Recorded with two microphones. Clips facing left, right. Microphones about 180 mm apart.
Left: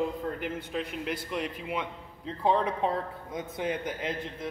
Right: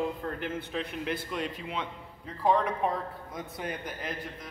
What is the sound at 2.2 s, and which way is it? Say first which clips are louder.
Speech: even; 30° left (ahead or behind).